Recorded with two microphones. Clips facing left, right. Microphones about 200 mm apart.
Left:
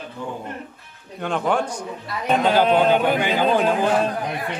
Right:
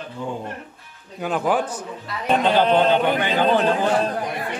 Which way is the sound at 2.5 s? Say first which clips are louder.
Even; 10° left (ahead or behind).